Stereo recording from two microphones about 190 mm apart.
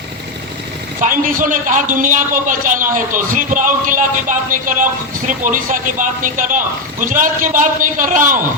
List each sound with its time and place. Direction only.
1.0 s a man's voice: 45° right (ahead or behind)